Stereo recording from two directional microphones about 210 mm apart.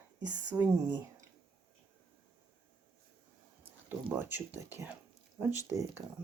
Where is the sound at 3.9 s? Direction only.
10° right (ahead or behind).